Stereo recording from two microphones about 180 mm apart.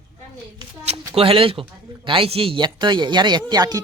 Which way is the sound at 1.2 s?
30° right (ahead or behind).